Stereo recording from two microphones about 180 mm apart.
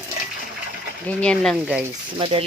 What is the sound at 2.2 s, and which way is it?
Speech, 35° right (ahead or behind).